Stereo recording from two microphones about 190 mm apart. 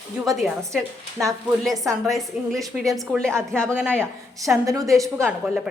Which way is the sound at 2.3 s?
5° right (ahead or behind).